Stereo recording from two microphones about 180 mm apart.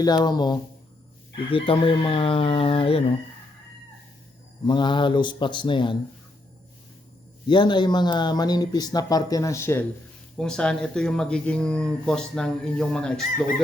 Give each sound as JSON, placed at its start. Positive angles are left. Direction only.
{"t": 0.3, "sound": "speech", "side_deg": 25}
{"t": 4.6, "sound": "speech", "side_deg": 25}
{"t": 7.4, "sound": "speech", "side_deg": 25}
{"t": 10.3, "sound": "speech", "side_deg": 5}